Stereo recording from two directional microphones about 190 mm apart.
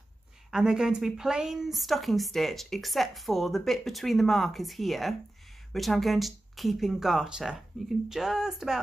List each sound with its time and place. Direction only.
0.5 s a woman's voice: 5° right (ahead or behind)